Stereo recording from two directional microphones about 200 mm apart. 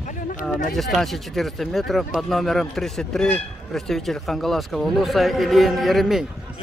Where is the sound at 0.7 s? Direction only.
Centre (ahead or behind).